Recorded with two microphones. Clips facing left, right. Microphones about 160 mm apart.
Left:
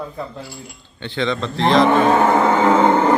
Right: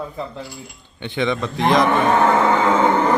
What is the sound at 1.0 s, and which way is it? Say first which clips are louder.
Speech: even; 15° right (ahead or behind).